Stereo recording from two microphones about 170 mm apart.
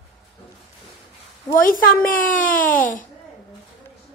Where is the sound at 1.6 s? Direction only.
55° left (ahead or behind).